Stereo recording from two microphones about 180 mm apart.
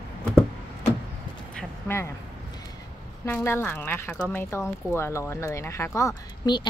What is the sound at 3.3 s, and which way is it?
Speech, 10° left (ahead or behind).